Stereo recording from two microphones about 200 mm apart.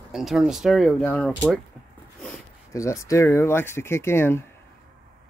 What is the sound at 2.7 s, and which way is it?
Speech, 15° left (ahead or behind).